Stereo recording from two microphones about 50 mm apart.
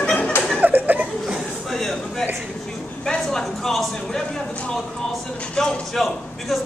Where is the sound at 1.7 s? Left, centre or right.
Centre.